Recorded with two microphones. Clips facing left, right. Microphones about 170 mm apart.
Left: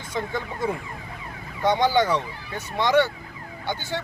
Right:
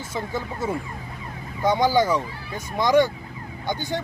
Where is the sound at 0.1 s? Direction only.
5° right (ahead or behind).